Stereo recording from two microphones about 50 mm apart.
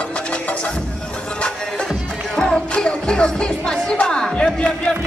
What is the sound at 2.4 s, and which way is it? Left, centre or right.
Music, centre.